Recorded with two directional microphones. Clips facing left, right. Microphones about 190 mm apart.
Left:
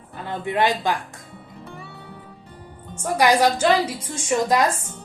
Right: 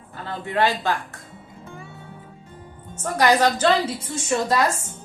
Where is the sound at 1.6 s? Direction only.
65° left (ahead or behind).